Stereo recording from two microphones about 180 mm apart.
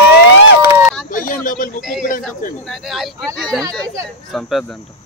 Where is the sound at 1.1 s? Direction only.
50° left (ahead or behind).